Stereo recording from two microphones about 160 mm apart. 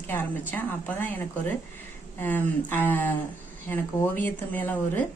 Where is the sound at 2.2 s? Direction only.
10° left (ahead or behind).